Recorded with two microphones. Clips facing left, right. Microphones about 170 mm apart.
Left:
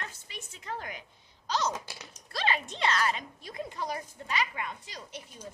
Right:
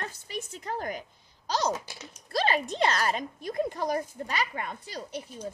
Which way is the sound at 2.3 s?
40° right (ahead or behind).